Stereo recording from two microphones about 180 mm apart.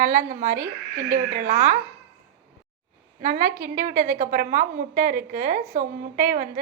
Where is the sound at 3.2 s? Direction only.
50° right (ahead or behind).